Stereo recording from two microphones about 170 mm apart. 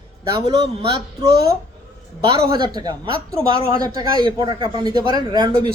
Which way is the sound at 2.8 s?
25° right (ahead or behind).